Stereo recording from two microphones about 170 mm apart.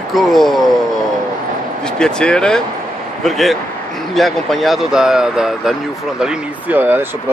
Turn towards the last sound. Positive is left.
turn(degrees=-10)  # may be behind; listen again after turning